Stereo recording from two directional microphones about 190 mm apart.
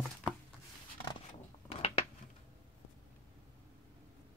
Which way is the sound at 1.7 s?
30° left (ahead or behind).